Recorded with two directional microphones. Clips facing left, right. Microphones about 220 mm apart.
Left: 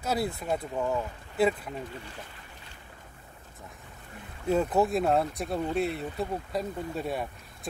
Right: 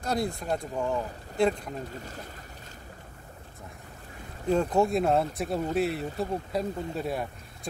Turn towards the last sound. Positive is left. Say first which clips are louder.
# right 1 dB
turn(degrees=0)  # may be behind; listen again after turning